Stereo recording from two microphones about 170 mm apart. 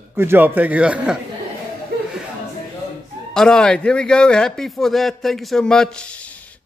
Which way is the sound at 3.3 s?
5° left (ahead or behind).